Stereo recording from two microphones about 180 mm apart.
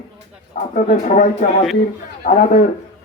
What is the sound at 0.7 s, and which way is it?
Speech, 40° left (ahead or behind).